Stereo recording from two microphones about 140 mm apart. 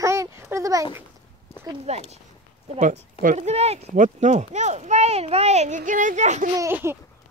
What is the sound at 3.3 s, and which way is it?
Speech, 50° right (ahead or behind).